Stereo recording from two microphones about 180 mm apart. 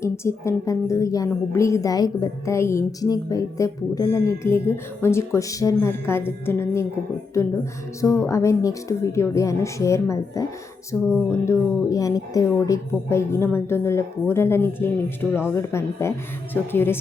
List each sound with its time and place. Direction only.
0.0 s a woman's voice: 15° left (ahead or behind)